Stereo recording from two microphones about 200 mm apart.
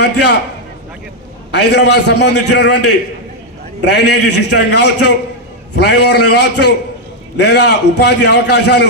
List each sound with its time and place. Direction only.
0.0 s a man's voice: 55° left (ahead or behind)
1.5 s a man's voice: 55° left (ahead or behind)
3.8 s a man's voice: 60° left (ahead or behind)